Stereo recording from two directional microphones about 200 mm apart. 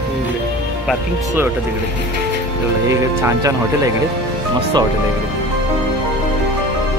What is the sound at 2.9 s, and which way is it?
Speech, 15° right (ahead or behind).